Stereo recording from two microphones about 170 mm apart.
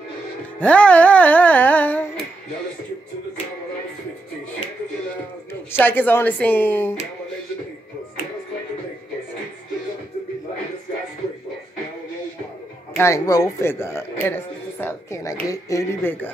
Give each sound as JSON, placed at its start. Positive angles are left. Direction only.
{"t": 0.6, "sound": "music", "side_deg": 10}
{"t": 5.5, "sound": "music", "side_deg": 10}
{"t": 12.9, "sound": "a man's voice", "side_deg": 15}
{"t": 15.5, "sound": "music", "side_deg": 20}